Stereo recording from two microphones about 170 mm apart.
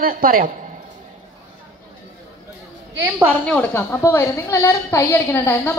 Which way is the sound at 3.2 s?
5° left (ahead or behind).